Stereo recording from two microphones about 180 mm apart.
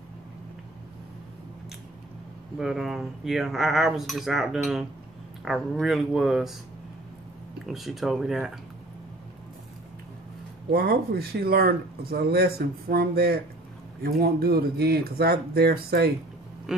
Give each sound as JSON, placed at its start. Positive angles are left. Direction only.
{"t": 2.6, "sound": "cutlery", "side_deg": 0}
{"t": 7.6, "sound": "cutlery", "side_deg": 0}
{"t": 10.7, "sound": "speech", "side_deg": -55}